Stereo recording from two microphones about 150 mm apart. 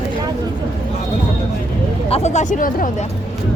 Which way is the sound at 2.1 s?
50° left (ahead or behind).